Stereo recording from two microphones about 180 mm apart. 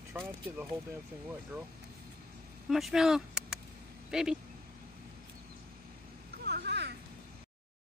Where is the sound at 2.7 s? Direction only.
Centre (ahead or behind).